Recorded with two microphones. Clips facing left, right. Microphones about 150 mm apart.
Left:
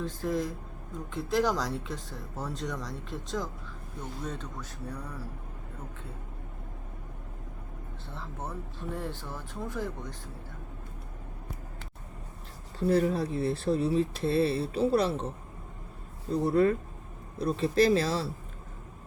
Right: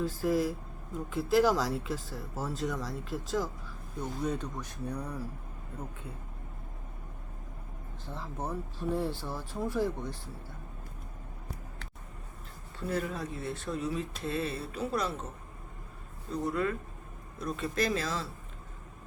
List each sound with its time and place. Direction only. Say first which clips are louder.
0.0 s speech: right 2 dB; 5° right (ahead or behind)
8.1 s speech: right 3 dB; 15° right (ahead or behind)
12.9 s speech: left 8 dB; 35° left (ahead or behind)
16.3 s speech: left 7 dB; 35° left (ahead or behind)